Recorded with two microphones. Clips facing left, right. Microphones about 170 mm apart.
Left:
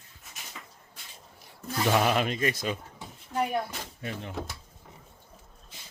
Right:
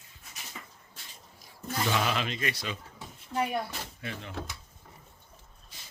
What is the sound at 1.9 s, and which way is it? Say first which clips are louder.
Speech: left 6 dB; 50° left (ahead or behind).